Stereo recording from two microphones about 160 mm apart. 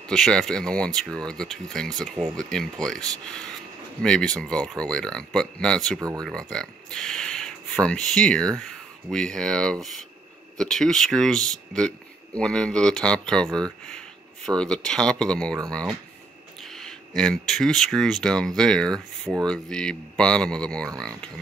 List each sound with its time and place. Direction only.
0.0 s speech: 5° left (ahead or behind)
4.0 s speech: 5° left (ahead or behind)
5.9 s speech: 20° right (ahead or behind)
6.2 s speech: 5° left (ahead or behind)